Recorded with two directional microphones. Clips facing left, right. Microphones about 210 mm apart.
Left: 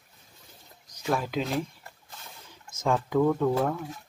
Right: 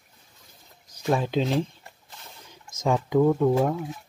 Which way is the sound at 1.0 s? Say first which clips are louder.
Right 4 dB; 25° right (ahead or behind).